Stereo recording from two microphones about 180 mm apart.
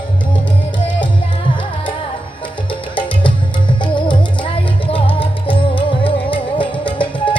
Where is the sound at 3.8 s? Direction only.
25° left (ahead or behind).